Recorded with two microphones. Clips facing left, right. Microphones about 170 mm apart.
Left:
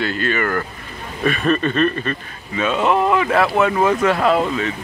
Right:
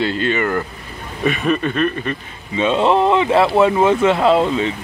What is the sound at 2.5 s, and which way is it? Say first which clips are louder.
Speech: right 3 dB; 25° right (ahead or behind).